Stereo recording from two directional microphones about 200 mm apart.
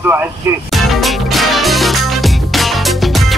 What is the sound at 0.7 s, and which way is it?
Music, centre (ahead or behind).